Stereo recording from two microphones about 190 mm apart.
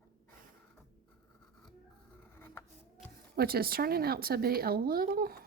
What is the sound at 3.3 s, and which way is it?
Speech, 50° right (ahead or behind).